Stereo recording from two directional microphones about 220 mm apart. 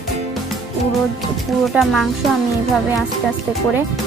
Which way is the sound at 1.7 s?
Centre (ahead or behind).